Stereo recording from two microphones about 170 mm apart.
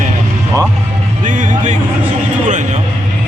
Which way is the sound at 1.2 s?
50° right (ahead or behind).